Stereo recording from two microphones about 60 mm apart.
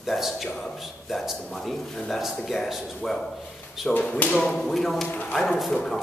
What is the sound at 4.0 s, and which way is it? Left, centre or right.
Speech, left.